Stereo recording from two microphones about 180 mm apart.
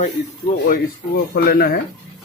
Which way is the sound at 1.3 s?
60° left (ahead or behind).